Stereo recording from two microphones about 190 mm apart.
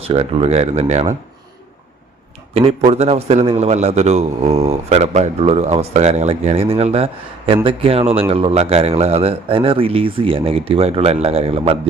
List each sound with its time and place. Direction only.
0.0 s a man's voice: 30° right (ahead or behind)
2.5 s a man's voice: 30° right (ahead or behind)